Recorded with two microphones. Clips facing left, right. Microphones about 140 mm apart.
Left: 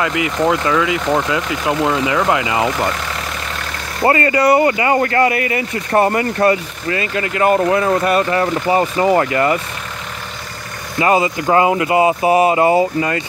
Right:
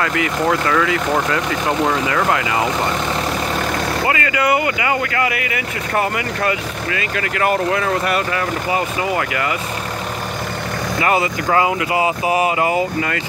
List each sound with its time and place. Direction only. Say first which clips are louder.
0.0 s speech: left 2 dB; 20° left (ahead or behind)
4.0 s speech: left 8 dB; 35° left (ahead or behind)
11.0 s speech: left 4 dB; 25° left (ahead or behind)